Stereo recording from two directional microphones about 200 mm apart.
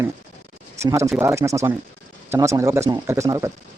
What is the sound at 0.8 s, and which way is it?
Speech, 15° right (ahead or behind).